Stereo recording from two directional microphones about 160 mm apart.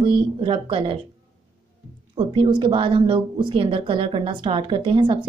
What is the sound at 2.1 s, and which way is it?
A woman's voice, 30° right (ahead or behind).